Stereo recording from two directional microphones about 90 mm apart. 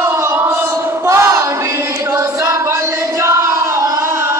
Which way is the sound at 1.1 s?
30° right (ahead or behind).